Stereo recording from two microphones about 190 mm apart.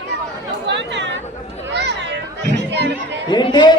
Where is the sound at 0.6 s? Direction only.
70° right (ahead or behind).